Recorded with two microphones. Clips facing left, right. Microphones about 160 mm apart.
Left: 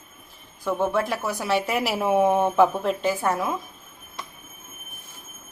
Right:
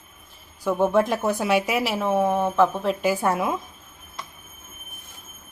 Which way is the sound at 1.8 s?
10° left (ahead or behind).